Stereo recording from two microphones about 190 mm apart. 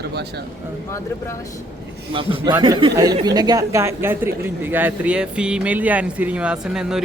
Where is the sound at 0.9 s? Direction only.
15° left (ahead or behind).